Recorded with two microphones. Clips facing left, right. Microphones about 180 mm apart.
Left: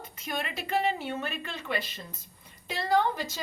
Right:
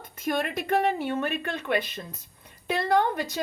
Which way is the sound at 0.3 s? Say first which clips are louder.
Right 7 dB; 55° right (ahead or behind).